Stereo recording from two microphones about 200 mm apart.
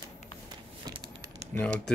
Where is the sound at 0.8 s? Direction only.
25° right (ahead or behind).